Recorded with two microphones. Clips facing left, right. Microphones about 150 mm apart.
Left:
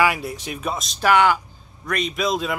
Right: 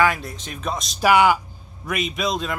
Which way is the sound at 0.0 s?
10° left (ahead or behind).